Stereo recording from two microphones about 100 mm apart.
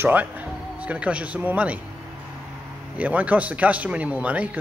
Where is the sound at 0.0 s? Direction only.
15° right (ahead or behind).